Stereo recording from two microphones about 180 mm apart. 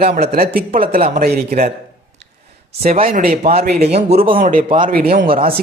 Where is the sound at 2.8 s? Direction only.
50° right (ahead or behind).